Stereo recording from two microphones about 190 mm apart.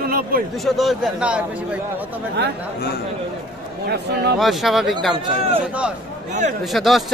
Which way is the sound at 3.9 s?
55° right (ahead or behind).